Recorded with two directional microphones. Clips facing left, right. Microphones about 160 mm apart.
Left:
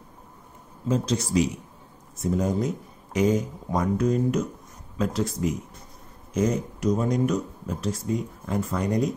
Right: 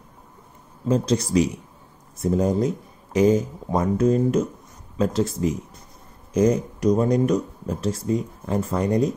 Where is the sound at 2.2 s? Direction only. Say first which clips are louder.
Right 4 dB; 30° right (ahead or behind).